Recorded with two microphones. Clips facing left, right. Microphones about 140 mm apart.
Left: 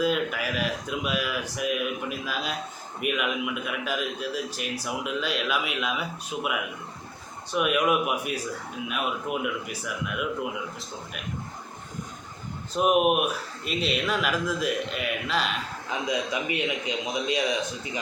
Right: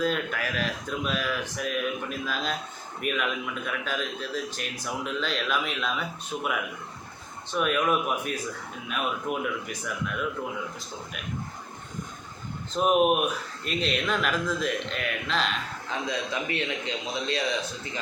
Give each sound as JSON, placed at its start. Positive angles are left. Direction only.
{"t": 0.0, "sound": "a man's voice", "side_deg": 5}
{"t": 12.7, "sound": "a man's voice", "side_deg": 10}